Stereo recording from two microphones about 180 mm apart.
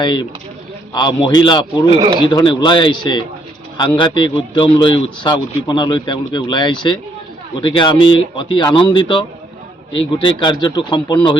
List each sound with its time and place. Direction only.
0.0 s speech: 25° left (ahead or behind)